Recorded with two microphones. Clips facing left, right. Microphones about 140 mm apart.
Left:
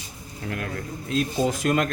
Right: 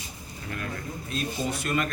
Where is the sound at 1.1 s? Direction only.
90° left.